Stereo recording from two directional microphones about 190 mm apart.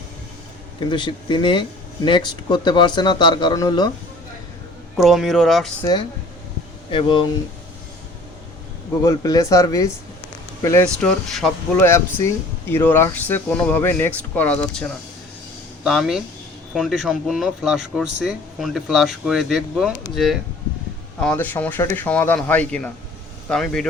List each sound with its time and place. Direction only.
0.9 s a man's voice: 25° left (ahead or behind)
4.9 s speech: centre (ahead or behind)
6.9 s a man's voice: 25° left (ahead or behind)
9.0 s speech: 20° left (ahead or behind)
11.0 s speech: 5° left (ahead or behind)
11.8 s speech: 15° left (ahead or behind)